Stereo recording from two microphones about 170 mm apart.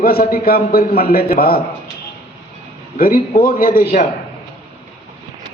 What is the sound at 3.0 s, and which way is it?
A man's voice, 55° left (ahead or behind).